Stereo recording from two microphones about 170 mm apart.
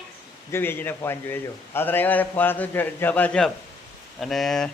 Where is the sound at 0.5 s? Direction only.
15° left (ahead or behind).